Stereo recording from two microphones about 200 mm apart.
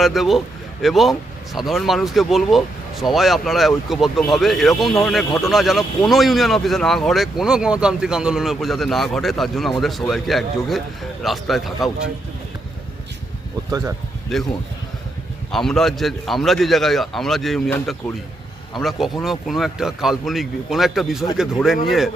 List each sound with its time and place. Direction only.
0.0 s speech: centre (ahead or behind)
13.7 s speech: 20° right (ahead or behind)
14.3 s speech: centre (ahead or behind)
15.5 s speech: centre (ahead or behind)